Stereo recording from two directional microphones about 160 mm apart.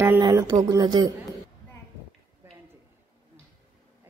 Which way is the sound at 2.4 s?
15° right (ahead or behind).